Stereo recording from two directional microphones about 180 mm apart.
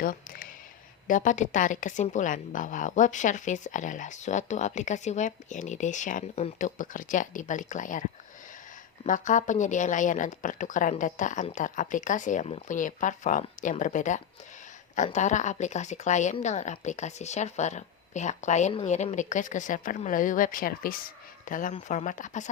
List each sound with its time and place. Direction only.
0.0 s a woman's voice: 50° left (ahead or behind)
9.0 s a woman's voice: 45° left (ahead or behind)